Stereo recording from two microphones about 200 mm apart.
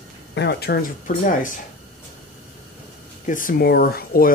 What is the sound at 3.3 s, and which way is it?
Speech, 45° left (ahead or behind).